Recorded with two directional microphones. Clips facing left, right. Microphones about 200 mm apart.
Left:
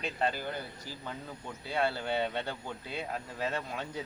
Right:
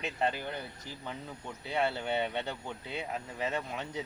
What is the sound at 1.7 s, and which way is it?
Speech, 20° right (ahead or behind).